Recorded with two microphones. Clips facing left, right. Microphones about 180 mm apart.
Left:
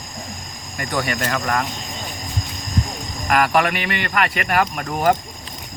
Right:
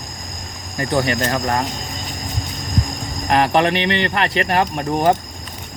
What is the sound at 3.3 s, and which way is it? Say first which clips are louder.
Speech: right 2 dB; 25° right (ahead or behind).